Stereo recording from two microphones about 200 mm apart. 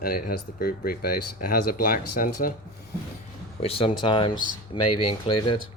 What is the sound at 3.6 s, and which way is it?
Speech, 25° left (ahead or behind).